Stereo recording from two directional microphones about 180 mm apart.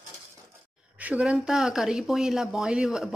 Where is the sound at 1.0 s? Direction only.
10° right (ahead or behind).